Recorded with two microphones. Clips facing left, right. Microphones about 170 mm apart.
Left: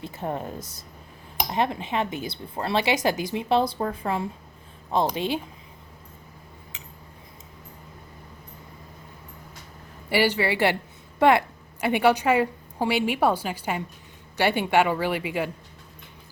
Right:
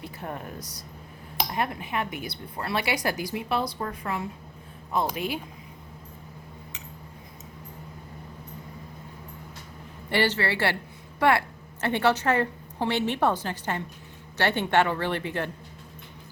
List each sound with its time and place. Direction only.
0.0 s speech: 25° left (ahead or behind)
10.1 s a woman's voice: 10° left (ahead or behind)